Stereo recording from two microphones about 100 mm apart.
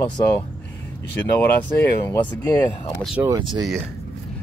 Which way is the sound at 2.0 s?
20° left (ahead or behind).